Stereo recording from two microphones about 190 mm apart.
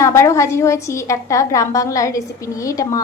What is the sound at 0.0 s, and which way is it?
A woman's voice, 15° left (ahead or behind).